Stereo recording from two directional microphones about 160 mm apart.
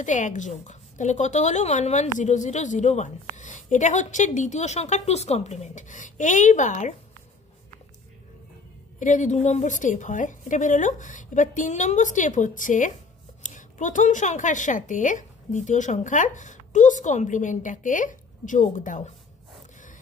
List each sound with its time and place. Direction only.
0.0 s a woman's voice: 50° left (ahead or behind)
9.0 s a woman's voice: 50° left (ahead or behind)